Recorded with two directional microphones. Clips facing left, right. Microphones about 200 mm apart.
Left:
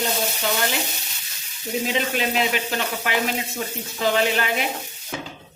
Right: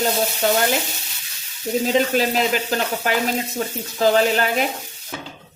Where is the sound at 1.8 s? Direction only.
40° right (ahead or behind).